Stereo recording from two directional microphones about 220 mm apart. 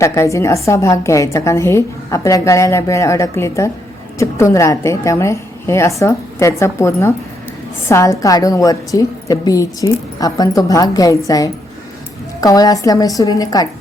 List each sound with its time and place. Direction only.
0.0 s a woman's voice: 15° left (ahead or behind)